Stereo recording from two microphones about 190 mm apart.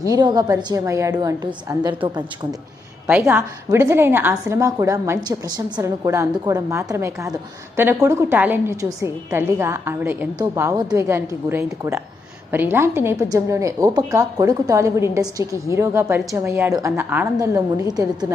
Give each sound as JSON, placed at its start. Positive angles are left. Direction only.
{"t": 0.0, "sound": "a woman's voice", "side_deg": -20}
{"t": 3.1, "sound": "a woman's voice", "side_deg": -5}